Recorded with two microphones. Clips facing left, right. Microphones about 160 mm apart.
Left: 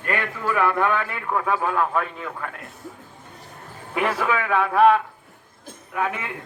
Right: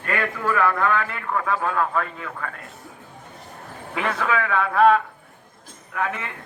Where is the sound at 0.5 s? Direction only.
15° left (ahead or behind).